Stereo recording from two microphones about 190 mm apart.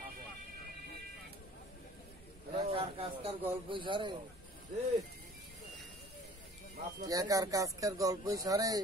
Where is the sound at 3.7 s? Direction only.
25° right (ahead or behind).